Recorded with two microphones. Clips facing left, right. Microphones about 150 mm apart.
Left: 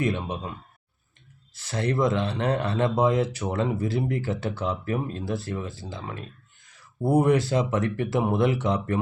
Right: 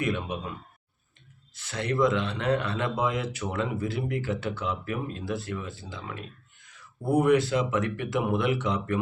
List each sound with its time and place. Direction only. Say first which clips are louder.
0.0 s speech: left 2 dB; 30° left (ahead or behind)
1.5 s speech: left 2 dB; 35° left (ahead or behind)